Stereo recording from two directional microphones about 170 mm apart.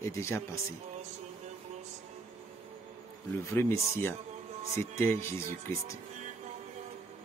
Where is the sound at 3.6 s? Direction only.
15° left (ahead or behind).